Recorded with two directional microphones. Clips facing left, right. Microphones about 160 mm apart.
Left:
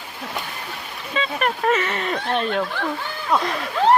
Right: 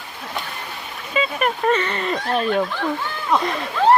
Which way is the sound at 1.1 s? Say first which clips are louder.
Right 2 dB; 5° right (ahead or behind).